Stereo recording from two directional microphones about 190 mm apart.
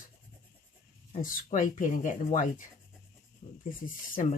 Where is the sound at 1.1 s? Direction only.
45° left (ahead or behind).